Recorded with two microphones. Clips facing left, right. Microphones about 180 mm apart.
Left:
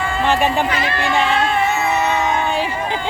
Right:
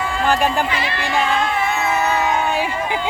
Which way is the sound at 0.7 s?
45° left (ahead or behind).